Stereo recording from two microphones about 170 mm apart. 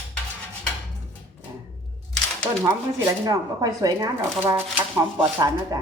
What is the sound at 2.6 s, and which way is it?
Speech, 20° right (ahead or behind).